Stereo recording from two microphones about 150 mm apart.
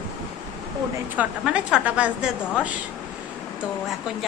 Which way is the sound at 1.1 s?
5° right (ahead or behind).